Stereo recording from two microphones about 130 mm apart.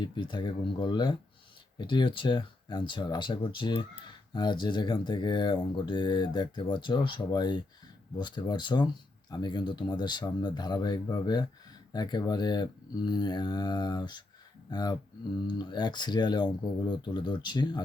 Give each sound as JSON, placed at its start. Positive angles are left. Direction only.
{"t": 0.0, "sound": "speech", "side_deg": 35}